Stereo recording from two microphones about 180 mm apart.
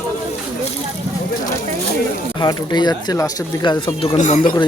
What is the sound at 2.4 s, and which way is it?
Speech, 25° left (ahead or behind).